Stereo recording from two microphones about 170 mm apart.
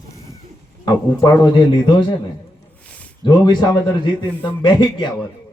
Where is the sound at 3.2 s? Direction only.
25° left (ahead or behind).